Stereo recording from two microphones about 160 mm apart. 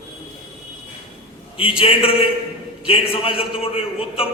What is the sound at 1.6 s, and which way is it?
A man's voice, 35° left (ahead or behind).